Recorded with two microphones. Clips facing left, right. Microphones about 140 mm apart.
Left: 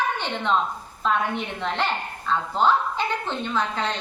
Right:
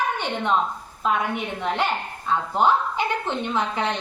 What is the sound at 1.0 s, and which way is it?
A woman's voice, 10° right (ahead or behind).